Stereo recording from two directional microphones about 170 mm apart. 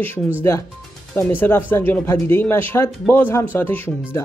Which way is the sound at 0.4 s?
15° left (ahead or behind).